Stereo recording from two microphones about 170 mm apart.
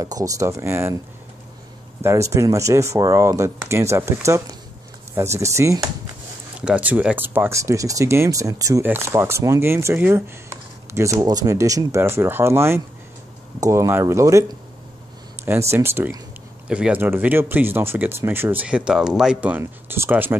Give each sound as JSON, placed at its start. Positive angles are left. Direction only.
{"t": 0.0, "sound": "speech", "side_deg": -20}
{"t": 2.0, "sound": "speech", "side_deg": -15}